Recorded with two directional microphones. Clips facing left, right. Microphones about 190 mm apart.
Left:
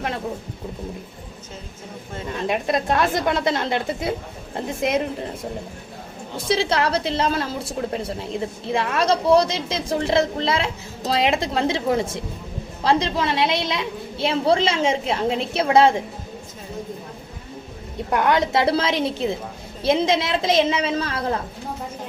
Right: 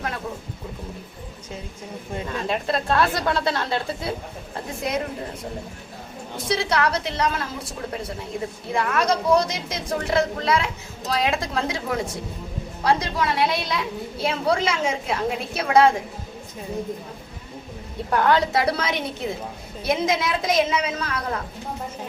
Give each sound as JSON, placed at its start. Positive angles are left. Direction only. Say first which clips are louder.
{"t": 2.5, "sound": "a woman's voice", "louder": "left 2 dB", "side_deg": 15}
{"t": 6.5, "sound": "a woman's voice", "louder": "left 2 dB", "side_deg": 30}
{"t": 8.7, "sound": "a woman's voice", "louder": "left 2 dB", "side_deg": 25}
{"t": 18.1, "sound": "a woman's voice", "louder": "even", "side_deg": 20}